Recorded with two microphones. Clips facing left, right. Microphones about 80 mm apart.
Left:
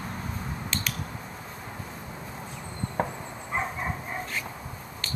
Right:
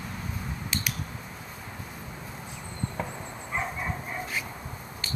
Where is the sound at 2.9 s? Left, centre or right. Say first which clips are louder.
Left 4 dB; left.